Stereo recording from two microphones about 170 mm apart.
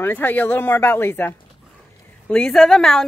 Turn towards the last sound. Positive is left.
turn(degrees=0)  # may be behind; listen again after turning